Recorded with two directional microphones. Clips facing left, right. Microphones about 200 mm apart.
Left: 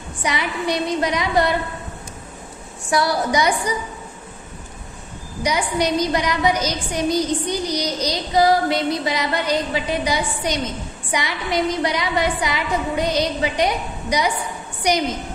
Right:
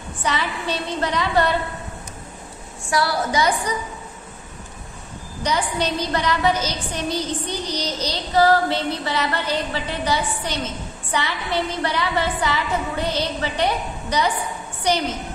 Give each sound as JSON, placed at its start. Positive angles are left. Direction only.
{"t": 0.2, "sound": "a woman's voice", "side_deg": 15}
{"t": 2.9, "sound": "a woman's voice", "side_deg": 15}
{"t": 5.4, "sound": "a woman's voice", "side_deg": 10}